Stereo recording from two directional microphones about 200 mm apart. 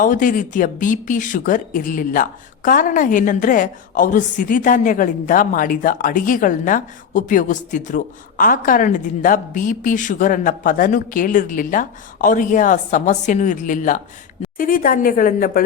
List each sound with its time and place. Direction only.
0.0 s a woman's voice: 40° left (ahead or behind)